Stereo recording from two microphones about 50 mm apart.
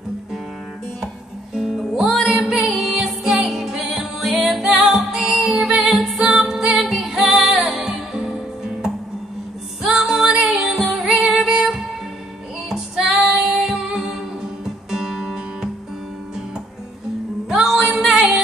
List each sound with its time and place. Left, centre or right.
1.0 s music: centre
17.5 s music: centre